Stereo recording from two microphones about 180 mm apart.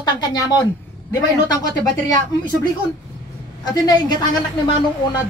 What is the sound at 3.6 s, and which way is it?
Speech, 20° left (ahead or behind).